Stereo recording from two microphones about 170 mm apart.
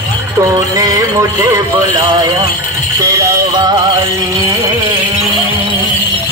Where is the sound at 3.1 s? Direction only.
20° right (ahead or behind).